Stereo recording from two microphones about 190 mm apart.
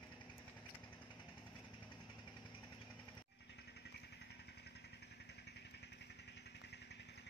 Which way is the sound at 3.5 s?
60° left (ahead or behind).